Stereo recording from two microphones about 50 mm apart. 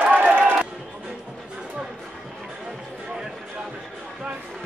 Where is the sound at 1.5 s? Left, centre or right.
Centre.